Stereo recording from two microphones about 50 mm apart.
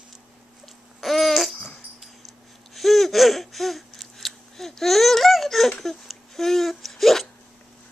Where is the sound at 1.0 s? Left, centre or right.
Centre.